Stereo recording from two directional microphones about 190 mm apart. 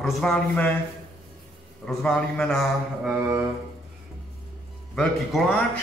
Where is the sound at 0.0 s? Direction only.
Centre (ahead or behind).